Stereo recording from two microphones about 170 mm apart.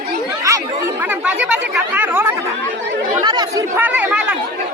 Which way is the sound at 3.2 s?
25° right (ahead or behind).